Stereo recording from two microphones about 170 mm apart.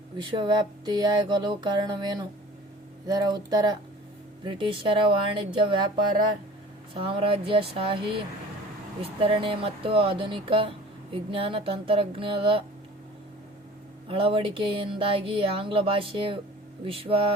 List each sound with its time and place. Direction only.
0.2 s speech: 30° right (ahead or behind)
6.9 s speech: 30° right (ahead or behind)
14.1 s speech: 30° right (ahead or behind)